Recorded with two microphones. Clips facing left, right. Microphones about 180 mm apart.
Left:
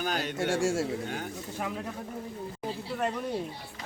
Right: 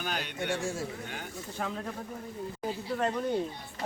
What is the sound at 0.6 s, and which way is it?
Speech, 85° left.